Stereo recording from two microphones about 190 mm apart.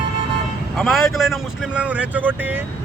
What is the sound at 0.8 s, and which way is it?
Speech, centre (ahead or behind).